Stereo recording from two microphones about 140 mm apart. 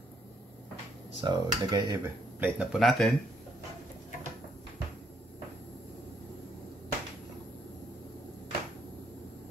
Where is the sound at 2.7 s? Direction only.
Centre (ahead or behind).